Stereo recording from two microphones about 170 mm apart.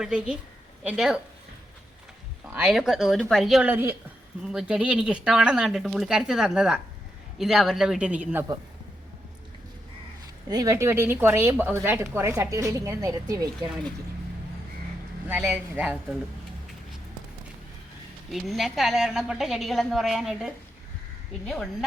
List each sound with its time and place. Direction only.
0.0 s speech: 5° right (ahead or behind)
2.6 s speech: centre (ahead or behind)
10.5 s speech: 20° right (ahead or behind)
15.3 s speech: 5° right (ahead or behind)
18.3 s speech: centre (ahead or behind)